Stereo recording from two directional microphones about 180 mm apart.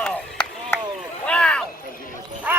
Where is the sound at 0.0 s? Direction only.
5° left (ahead or behind).